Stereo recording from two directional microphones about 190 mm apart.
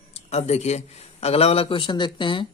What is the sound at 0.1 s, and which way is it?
A man's voice, 35° left (ahead or behind).